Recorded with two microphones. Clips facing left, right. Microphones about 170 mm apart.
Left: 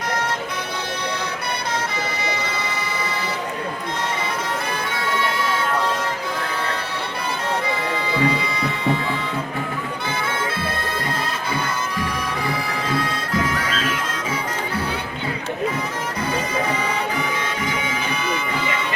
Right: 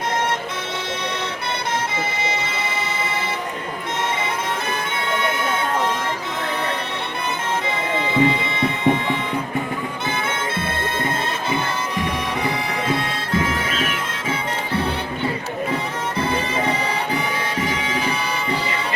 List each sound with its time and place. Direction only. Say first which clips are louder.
8.1 s speech: right 3 dB; 20° right (ahead or behind)
8.8 s music: right 3 dB; 20° right (ahead or behind)
12.9 s bagpipes: even; 25° right (ahead or behind)